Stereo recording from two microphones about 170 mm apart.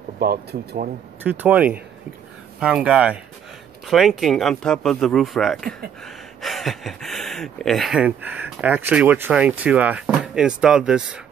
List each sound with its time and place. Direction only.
0.2 s speech: 60° right (ahead or behind)
1.2 s speech: 10° right (ahead or behind)